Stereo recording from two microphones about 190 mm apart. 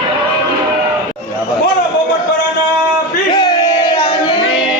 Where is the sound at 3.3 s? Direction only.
20° left (ahead or behind).